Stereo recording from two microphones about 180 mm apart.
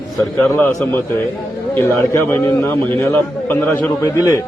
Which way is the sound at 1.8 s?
15° left (ahead or behind).